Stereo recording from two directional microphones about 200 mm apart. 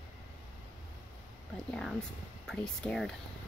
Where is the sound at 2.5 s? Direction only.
5° left (ahead or behind).